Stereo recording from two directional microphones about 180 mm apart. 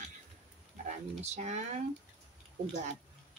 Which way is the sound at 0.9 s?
40° right (ahead or behind).